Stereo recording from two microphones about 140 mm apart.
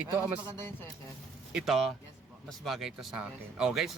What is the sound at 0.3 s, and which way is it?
Speech, 35° right (ahead or behind).